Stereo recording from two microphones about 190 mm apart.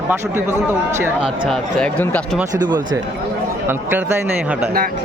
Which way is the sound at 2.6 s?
20° right (ahead or behind).